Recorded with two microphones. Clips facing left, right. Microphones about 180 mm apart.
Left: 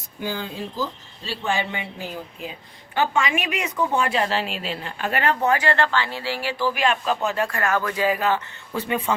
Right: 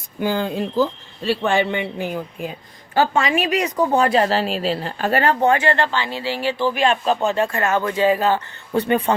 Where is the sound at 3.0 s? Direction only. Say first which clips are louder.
Right 4 dB; 35° right (ahead or behind).